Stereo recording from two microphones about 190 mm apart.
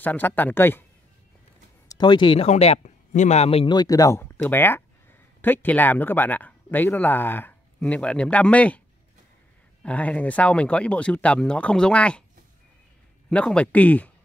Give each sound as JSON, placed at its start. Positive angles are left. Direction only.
{"t": 0.0, "sound": "speech", "side_deg": 10}
{"t": 1.9, "sound": "speech", "side_deg": 25}
{"t": 9.8, "sound": "speech", "side_deg": 5}
{"t": 13.3, "sound": "speech", "side_deg": 5}